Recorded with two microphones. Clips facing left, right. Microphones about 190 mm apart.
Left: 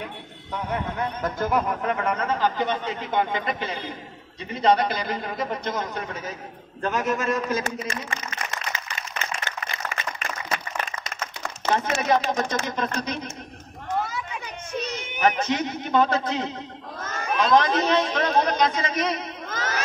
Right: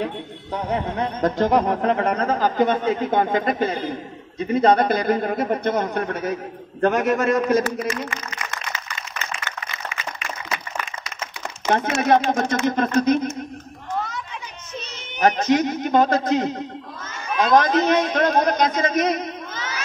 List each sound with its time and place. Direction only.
0.0 s speech: 30° right (ahead or behind); by 7.6 s 60° right (ahead or behind)
11.7 s speech: 55° right (ahead or behind)
15.1 s a man's voice: 40° right (ahead or behind)
19.5 s a sound: 45° left (ahead or behind)